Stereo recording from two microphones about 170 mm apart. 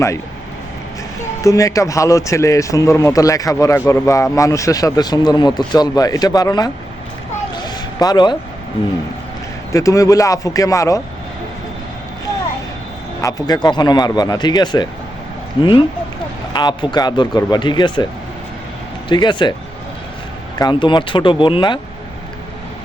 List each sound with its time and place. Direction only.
1.4 s a man's voice: 20° left (ahead or behind)
7.6 s a sound: 25° left (ahead or behind)
9.7 s a man's voice: 20° left (ahead or behind)
13.2 s a man's voice: 25° left (ahead or behind)
19.0 s a man's voice: 25° left (ahead or behind)
20.6 s a man's voice: 25° left (ahead or behind)